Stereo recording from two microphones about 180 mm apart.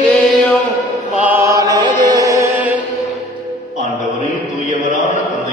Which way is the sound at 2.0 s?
20° right (ahead or behind).